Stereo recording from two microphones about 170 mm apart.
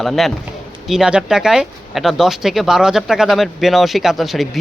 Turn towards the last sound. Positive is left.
turn(degrees=0)  # may be behind; listen again after turning